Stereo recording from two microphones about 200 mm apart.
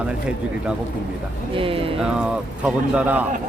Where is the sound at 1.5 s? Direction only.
25° right (ahead or behind).